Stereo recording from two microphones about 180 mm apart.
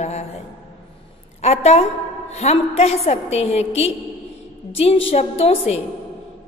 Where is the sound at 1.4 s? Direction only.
35° left (ahead or behind).